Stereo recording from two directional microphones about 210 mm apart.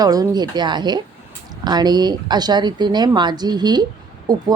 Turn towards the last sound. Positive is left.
turn(degrees=-20)  # may be behind; listen again after turning